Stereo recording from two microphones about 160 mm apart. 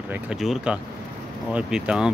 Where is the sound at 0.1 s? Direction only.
5° right (ahead or behind).